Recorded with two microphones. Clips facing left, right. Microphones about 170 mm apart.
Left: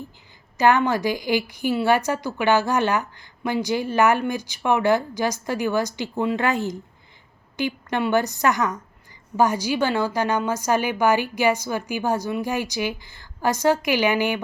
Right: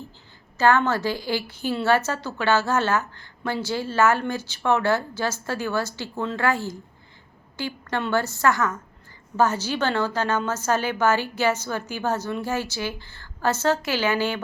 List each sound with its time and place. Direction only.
0.5 s a woman's voice: 15° left (ahead or behind)